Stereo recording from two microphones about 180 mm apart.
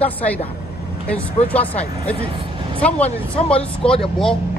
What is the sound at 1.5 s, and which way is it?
Speech, 10° left (ahead or behind).